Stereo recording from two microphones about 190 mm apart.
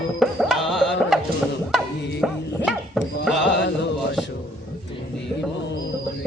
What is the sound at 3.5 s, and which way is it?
Music, 65° left (ahead or behind).